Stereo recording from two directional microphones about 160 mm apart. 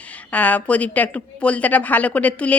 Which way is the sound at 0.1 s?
10° left (ahead or behind).